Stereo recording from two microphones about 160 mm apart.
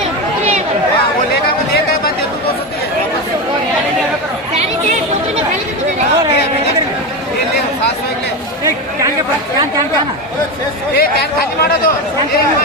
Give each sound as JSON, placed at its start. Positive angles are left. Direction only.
{"t": 10.9, "sound": "speech", "side_deg": 75}